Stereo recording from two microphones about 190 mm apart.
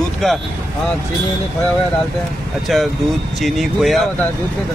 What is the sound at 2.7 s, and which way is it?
Speech, centre (ahead or behind).